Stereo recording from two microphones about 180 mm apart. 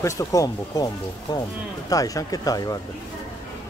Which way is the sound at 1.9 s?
20° left (ahead or behind).